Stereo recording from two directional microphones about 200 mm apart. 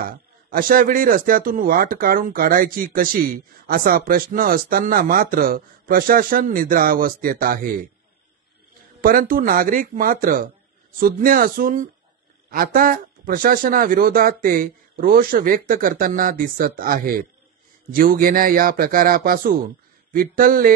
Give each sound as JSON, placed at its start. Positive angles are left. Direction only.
{"t": 0.0, "sound": "a man's voice", "side_deg": -45}
{"t": 9.0, "sound": "a man's voice", "side_deg": -45}